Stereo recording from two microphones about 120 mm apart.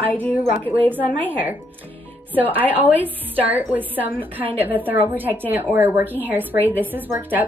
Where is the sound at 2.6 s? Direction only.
15° right (ahead or behind).